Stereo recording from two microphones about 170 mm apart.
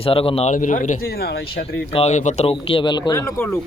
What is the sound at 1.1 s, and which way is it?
Speech, 70° left (ahead or behind).